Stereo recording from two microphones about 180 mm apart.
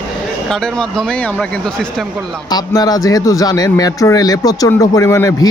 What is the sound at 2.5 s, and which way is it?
Speech, 20° left (ahead or behind).